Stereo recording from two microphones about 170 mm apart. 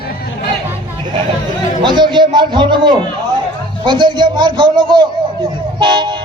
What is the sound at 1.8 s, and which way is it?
A man's voice, 25° right (ahead or behind).